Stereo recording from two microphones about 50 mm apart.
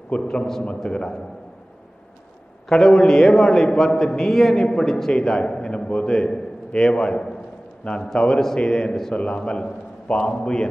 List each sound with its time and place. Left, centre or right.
0.1 s a man's voice: centre
2.7 s a man's voice: centre